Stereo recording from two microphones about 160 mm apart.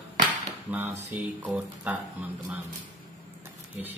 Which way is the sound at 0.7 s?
10° right (ahead or behind).